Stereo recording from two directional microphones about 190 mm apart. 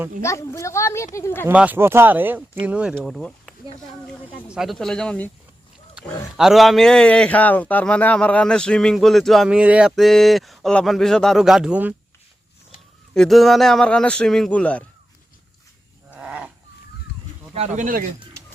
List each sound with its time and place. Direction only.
0.2 s speech: 15° left (ahead or behind)
1.5 s speech: 10° right (ahead or behind)
4.5 s speech: centre (ahead or behind)
6.3 s speech: centre (ahead or behind)
13.1 s speech: centre (ahead or behind)
16.1 s a sound: 5° right (ahead or behind)
17.5 s speech: 35° right (ahead or behind)